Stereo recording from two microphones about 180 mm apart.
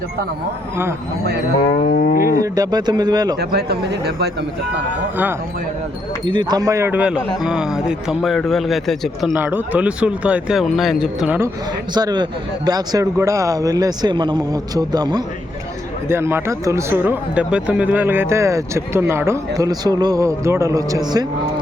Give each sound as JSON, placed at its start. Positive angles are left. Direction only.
{"t": 1.8, "sound": "livestock", "side_deg": 45}
{"t": 2.4, "sound": "a man's voice", "side_deg": -20}
{"t": 3.3, "sound": "speech", "side_deg": -60}
{"t": 6.2, "sound": "speech", "side_deg": -25}
{"t": 11.9, "sound": "a man's voice", "side_deg": -25}